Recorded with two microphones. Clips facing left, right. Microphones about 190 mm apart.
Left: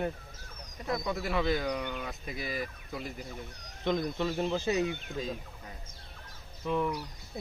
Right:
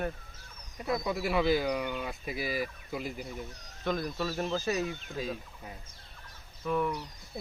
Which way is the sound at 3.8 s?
20° left (ahead or behind).